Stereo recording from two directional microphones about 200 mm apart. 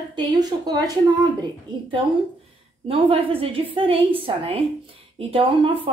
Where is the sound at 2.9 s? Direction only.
30° right (ahead or behind).